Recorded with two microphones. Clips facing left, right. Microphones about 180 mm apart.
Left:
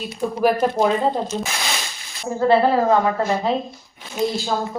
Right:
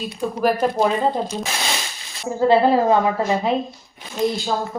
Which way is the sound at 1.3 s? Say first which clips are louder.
Even; 10° right (ahead or behind).